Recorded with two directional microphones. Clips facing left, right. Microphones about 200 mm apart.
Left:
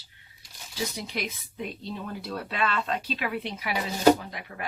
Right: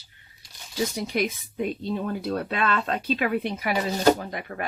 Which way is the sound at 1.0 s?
50° right (ahead or behind).